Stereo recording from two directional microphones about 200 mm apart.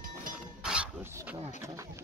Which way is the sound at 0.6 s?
10° right (ahead or behind).